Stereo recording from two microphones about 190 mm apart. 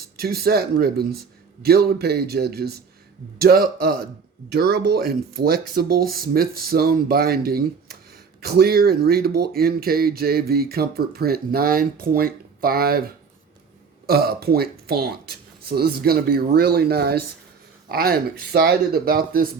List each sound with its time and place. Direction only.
0.0 s speech: 55° right (ahead or behind)
14.1 s speech: 55° right (ahead or behind)